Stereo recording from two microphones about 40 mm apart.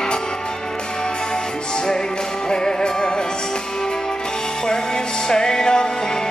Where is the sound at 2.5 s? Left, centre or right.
Centre.